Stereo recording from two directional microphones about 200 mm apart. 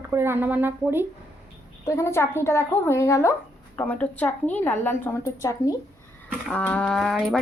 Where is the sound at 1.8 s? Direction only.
15° left (ahead or behind).